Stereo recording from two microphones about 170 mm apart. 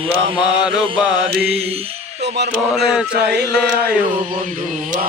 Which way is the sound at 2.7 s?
Centre (ahead or behind).